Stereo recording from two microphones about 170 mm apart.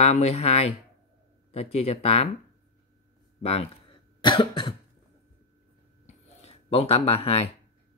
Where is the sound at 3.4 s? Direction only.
30° left (ahead or behind).